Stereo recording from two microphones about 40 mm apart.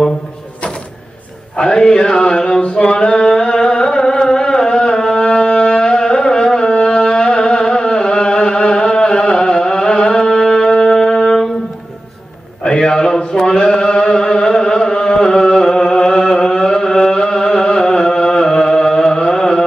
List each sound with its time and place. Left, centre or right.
1.6 s mantra: left
2.8 s singing: left
5.2 s music: left
12.6 s a sound: centre
13.7 s music: left